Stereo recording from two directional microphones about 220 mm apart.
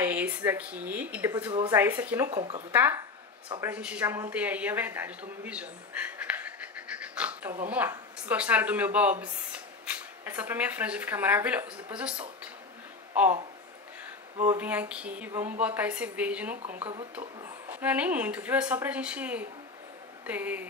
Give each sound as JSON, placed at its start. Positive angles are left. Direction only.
{"t": 0.0, "sound": "a woman's voice", "side_deg": -10}
{"t": 2.7, "sound": "a woman's voice", "side_deg": -10}
{"t": 3.4, "sound": "speech", "side_deg": -20}
{"t": 3.7, "sound": "a woman's voice", "side_deg": -5}
{"t": 14.5, "sound": "a woman's voice", "side_deg": -5}
{"t": 17.6, "sound": "a woman's voice", "side_deg": -5}